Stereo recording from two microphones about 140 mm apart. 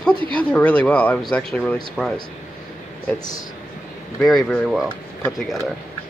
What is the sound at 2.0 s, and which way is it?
Speech, 5° right (ahead or behind).